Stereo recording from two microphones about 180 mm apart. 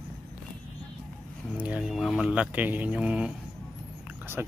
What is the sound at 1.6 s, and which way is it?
Speech, 5° right (ahead or behind).